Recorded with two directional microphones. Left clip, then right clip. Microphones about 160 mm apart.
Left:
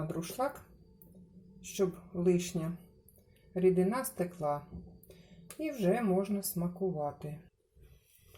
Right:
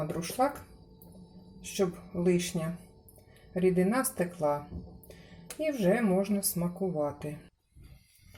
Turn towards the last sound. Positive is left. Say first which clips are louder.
# right 3 dB
turn(degrees=5)  # may be behind; listen again after turning